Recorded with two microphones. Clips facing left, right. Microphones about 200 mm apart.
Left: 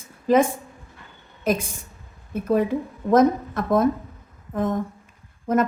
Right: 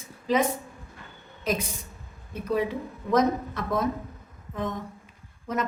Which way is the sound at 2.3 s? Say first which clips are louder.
Left 6 dB; 50° left (ahead or behind).